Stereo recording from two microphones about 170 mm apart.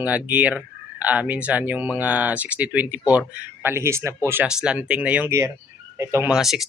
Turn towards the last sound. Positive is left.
turn(degrees=0)  # may be behind; listen again after turning